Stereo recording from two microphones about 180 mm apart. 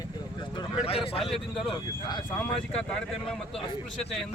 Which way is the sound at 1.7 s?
25° left (ahead or behind).